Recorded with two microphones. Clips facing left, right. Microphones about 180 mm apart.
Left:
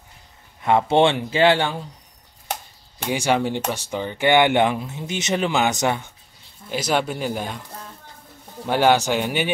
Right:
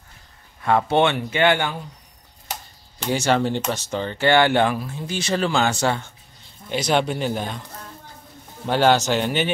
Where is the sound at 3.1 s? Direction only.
10° left (ahead or behind).